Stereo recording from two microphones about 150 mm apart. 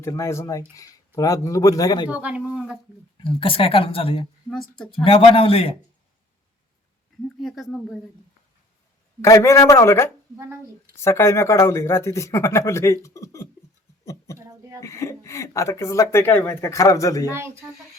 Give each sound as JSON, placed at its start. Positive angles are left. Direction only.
{"t": 0.0, "sound": "speech", "side_deg": 20}
{"t": 2.0, "sound": "a man's voice", "side_deg": -10}
{"t": 3.2, "sound": "speech", "side_deg": 35}
{"t": 4.7, "sound": "speech", "side_deg": 5}
{"t": 5.0, "sound": "speech", "side_deg": 35}
{"t": 7.4, "sound": "speech", "side_deg": 0}
{"t": 9.2, "sound": "a man's voice", "side_deg": 20}
{"t": 10.3, "sound": "speech", "side_deg": -15}
{"t": 10.9, "sound": "speech", "side_deg": 20}
{"t": 14.0, "sound": "a sound", "side_deg": 20}
{"t": 14.8, "sound": "speech", "side_deg": 20}
{"t": 17.2, "sound": "a man's voice", "side_deg": -15}